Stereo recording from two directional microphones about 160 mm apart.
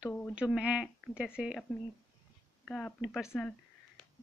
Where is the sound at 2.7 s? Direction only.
5° left (ahead or behind).